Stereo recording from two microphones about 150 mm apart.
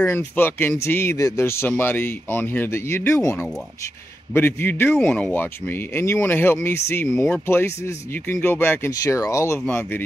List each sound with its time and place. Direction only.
0.0 s speech: 15° left (ahead or behind)